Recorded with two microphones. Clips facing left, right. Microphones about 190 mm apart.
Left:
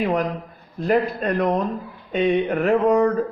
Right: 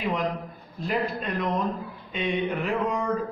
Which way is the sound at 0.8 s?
50° left (ahead or behind).